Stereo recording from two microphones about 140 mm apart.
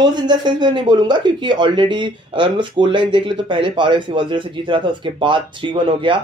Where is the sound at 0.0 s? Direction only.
30° right (ahead or behind).